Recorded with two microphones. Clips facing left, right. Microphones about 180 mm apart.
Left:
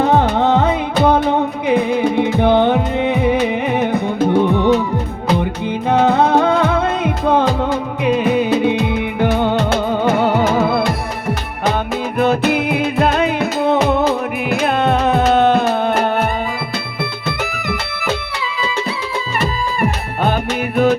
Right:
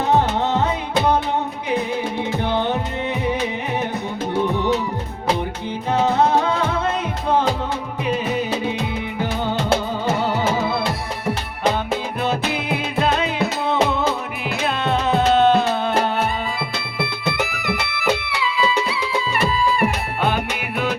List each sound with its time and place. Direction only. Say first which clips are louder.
0.3 s music: left 6 dB; 55° left (ahead or behind)
5.9 s music: left 4 dB; 55° left (ahead or behind)
12.2 s music: left 12 dB; 50° left (ahead or behind)
20.2 s music: left 5 dB; 45° left (ahead or behind)